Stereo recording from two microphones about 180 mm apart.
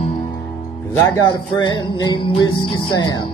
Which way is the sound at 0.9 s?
15° left (ahead or behind).